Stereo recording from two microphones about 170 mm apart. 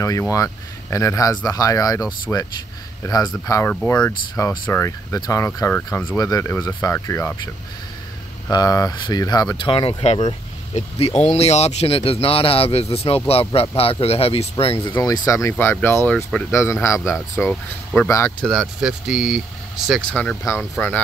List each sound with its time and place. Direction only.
0.0 s speech: 20° left (ahead or behind)
8.5 s speech: 20° left (ahead or behind)
15.0 s speech: 20° left (ahead or behind)
18.4 s speech: centre (ahead or behind)
19.9 s speech: 5° left (ahead or behind)